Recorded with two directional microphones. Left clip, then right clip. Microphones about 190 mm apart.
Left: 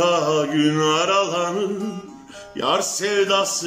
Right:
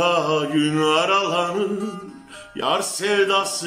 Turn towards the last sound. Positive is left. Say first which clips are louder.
# even
turn(degrees=0)  # may be behind; listen again after turning